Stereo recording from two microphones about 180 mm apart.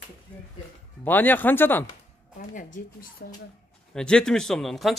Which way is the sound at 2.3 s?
45° left (ahead or behind).